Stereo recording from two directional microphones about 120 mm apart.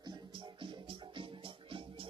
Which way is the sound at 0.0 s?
40° right (ahead or behind).